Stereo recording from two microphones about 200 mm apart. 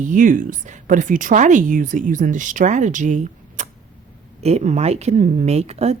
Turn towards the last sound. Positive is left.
turn(degrees=-30)  # may be behind; listen again after turning